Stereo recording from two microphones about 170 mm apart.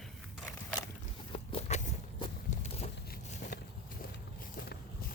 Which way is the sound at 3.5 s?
65° left (ahead or behind).